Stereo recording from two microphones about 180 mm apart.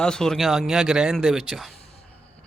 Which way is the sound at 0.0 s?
5° left (ahead or behind).